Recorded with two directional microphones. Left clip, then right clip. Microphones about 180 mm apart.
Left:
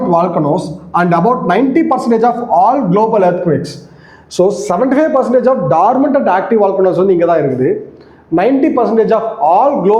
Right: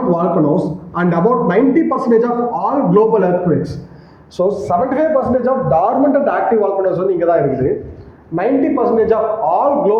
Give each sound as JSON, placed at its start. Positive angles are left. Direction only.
{"t": 0.1, "sound": "a man's voice", "side_deg": 50}